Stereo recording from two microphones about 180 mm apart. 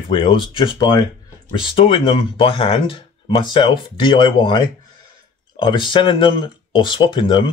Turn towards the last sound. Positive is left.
turn(degrees=30)  # may be behind; listen again after turning